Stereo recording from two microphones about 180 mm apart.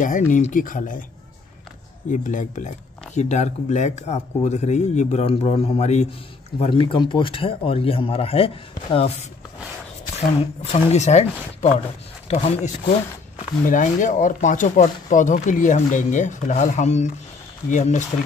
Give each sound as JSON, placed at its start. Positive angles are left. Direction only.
{"t": 0.0, "sound": "speech", "side_deg": 45}
{"t": 2.0, "sound": "speech", "side_deg": 45}
{"t": 10.1, "sound": "speech", "side_deg": 35}